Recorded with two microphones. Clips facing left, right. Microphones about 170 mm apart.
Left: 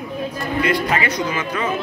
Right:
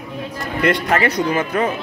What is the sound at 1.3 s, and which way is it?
Speech, 40° right (ahead or behind).